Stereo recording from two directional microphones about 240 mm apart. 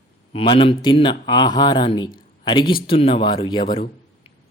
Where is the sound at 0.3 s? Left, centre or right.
Left.